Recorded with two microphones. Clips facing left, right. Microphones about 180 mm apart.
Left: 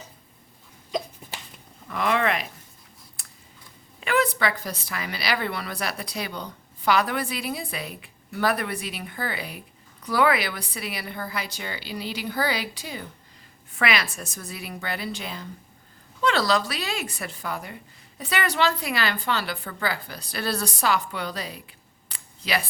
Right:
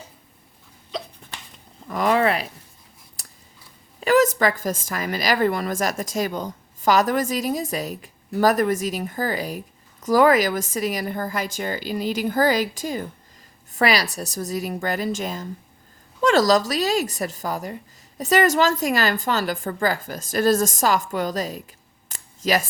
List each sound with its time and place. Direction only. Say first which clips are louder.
1.2 s a sound: left 1 dB; 10° left (ahead or behind)
1.9 s a woman's voice: right 4 dB; 40° right (ahead or behind)
3.2 s scissors: right 3 dB; 40° right (ahead or behind)
4.0 s a woman's voice: right 6 dB; 40° right (ahead or behind)